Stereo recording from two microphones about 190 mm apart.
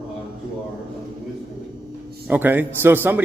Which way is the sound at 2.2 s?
10° right (ahead or behind).